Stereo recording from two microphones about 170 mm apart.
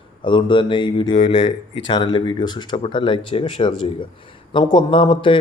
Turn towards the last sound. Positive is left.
turn(degrees=30)  # may be behind; listen again after turning